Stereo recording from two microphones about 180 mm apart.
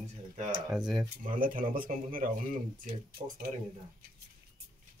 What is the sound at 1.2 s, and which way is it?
Speech, 50° right (ahead or behind).